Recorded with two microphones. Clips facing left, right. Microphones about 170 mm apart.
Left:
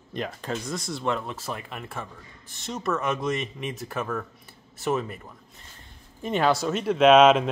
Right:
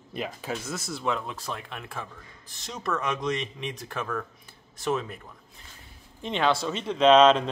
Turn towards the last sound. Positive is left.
turn(degrees=5)  # may be behind; listen again after turning